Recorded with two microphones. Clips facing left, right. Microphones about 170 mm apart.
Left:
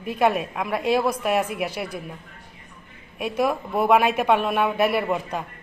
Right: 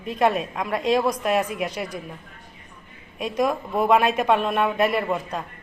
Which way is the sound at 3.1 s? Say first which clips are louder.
Even; 5° left (ahead or behind).